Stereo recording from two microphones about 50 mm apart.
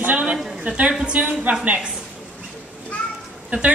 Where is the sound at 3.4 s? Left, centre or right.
Right.